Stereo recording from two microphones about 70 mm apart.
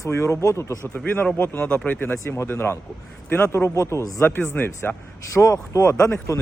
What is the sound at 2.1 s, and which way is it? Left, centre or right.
Speech, left.